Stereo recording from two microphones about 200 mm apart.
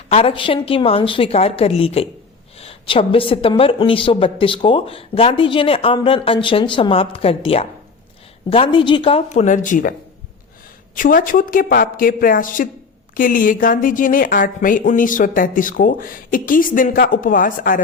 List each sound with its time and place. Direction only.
0.1 s a woman's voice: 30° left (ahead or behind)
10.9 s a woman's voice: 45° left (ahead or behind)